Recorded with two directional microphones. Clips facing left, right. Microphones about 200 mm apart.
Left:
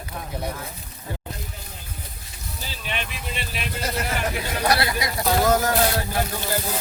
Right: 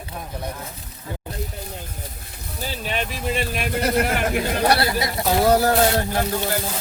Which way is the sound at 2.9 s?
40° right (ahead or behind).